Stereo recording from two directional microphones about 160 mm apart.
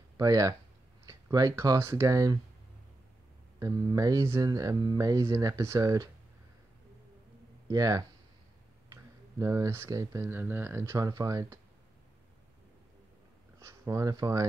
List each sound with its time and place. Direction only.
0.2 s speech: 20° right (ahead or behind)
3.5 s speech: 20° right (ahead or behind)
7.7 s speech: 20° right (ahead or behind)
13.6 s speech: 20° right (ahead or behind)